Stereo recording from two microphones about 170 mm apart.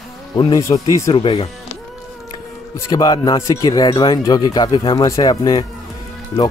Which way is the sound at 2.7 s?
20° left (ahead or behind).